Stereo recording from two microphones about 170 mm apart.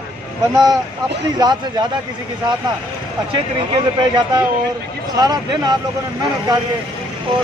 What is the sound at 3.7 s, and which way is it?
Speech, 25° right (ahead or behind).